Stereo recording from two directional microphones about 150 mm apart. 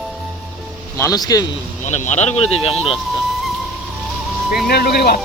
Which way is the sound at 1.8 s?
50° left (ahead or behind).